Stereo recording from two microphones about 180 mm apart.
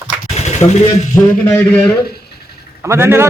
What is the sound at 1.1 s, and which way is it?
Speech, 15° left (ahead or behind).